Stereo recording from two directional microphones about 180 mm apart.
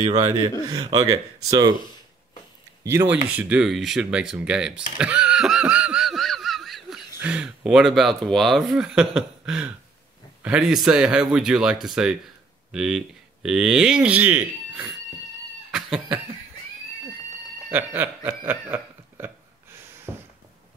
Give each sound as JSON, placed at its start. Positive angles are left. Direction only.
{"t": 0.3, "sound": "a man's voice", "side_deg": -20}
{"t": 2.8, "sound": "a man's voice", "side_deg": -15}
{"t": 4.9, "sound": "snicker", "side_deg": -5}
{"t": 7.2, "sound": "speech", "side_deg": -5}
{"t": 15.7, "sound": "cat", "side_deg": -5}
{"t": 17.6, "sound": "a sound", "side_deg": -10}